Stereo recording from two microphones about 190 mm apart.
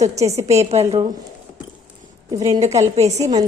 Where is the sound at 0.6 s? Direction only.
35° right (ahead or behind).